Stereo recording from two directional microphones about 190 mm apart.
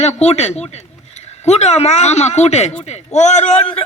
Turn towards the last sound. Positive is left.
turn(degrees=35)  # may be behind; listen again after turning